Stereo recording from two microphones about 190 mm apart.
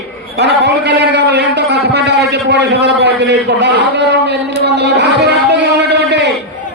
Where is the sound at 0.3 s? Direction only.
65° right (ahead or behind).